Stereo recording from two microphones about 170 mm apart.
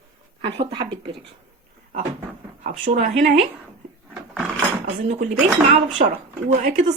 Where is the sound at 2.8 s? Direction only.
45° right (ahead or behind).